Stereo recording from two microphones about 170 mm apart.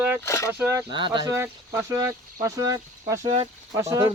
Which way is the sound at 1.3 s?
15° right (ahead or behind).